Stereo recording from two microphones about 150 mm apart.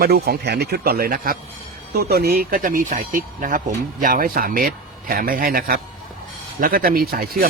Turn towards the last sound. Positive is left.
turn(degrees=-80)